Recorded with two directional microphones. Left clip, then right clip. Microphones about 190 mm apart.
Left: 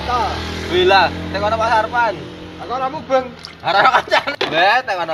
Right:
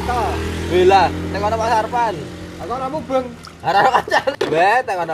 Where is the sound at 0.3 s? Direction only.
50° left (ahead or behind).